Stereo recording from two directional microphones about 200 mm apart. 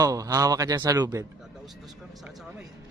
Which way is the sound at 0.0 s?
15° right (ahead or behind).